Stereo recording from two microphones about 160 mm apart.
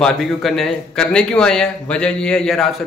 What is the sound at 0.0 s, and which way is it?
A man's voice, centre (ahead or behind).